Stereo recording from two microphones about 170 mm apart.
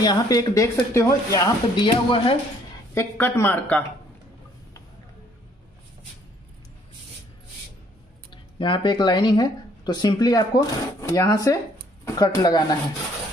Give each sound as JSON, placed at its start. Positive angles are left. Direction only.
{"t": 0.0, "sound": "speech", "side_deg": 25}
{"t": 8.3, "sound": "speech", "side_deg": 30}